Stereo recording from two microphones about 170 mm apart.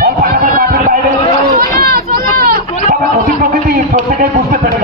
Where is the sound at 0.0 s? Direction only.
60° right (ahead or behind).